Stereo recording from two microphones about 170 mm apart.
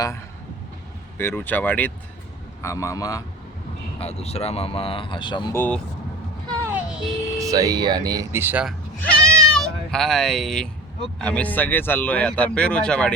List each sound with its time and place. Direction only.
1.2 s a man's voice: 10° left (ahead or behind)
4.0 s speech: 40° left (ahead or behind)
5.5 s speech: 10° left (ahead or behind)
6.7 s child singing: 5° right (ahead or behind)
7.3 s speech: 20° right (ahead or behind)
9.2 s music: 5° left (ahead or behind)
11.2 s speech: 5° left (ahead or behind)